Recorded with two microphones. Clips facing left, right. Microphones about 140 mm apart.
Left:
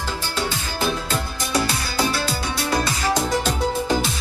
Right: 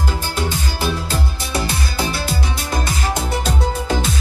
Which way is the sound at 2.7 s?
20° right (ahead or behind).